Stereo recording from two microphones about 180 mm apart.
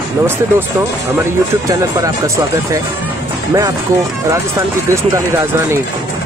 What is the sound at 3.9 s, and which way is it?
Speech, 15° right (ahead or behind).